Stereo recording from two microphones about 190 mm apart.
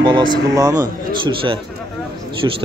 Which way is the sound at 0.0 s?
25° right (ahead or behind).